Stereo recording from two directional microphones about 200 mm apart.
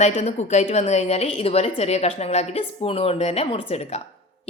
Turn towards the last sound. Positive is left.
turn(degrees=30)  # may be behind; listen again after turning